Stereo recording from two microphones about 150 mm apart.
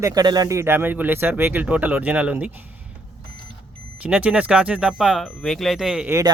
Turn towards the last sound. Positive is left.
turn(degrees=-5)  # may be behind; listen again after turning